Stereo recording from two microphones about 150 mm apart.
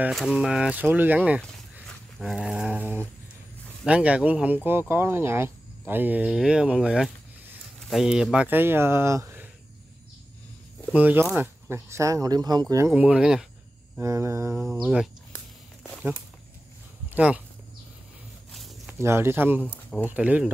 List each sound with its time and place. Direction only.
0.1 s speech: centre (ahead or behind)
1.4 s a sound: 5° left (ahead or behind)
3.8 s speech: 10° right (ahead or behind)
10.9 s speech: 10° right (ahead or behind)
12.9 s speech: 10° right (ahead or behind)
13.9 s speech: 20° right (ahead or behind)
17.1 s speech: 10° right (ahead or behind)
18.5 s a sound: centre (ahead or behind)
18.9 s speech: 15° right (ahead or behind)
19.6 s speech: 10° left (ahead or behind)
20.1 s speech: 10° right (ahead or behind)